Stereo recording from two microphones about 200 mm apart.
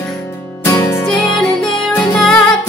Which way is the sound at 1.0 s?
5° left (ahead or behind).